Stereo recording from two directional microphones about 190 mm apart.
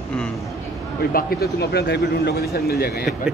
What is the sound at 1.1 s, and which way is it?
A man's voice, 55° left (ahead or behind).